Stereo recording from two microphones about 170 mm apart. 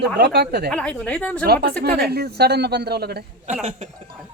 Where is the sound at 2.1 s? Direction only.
70° right (ahead or behind).